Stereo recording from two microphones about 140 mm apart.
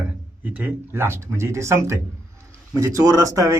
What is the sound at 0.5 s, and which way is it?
Speech, 15° right (ahead or behind).